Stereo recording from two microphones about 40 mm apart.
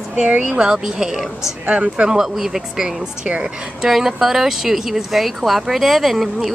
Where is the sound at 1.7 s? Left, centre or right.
Right; by 2.9 s centre.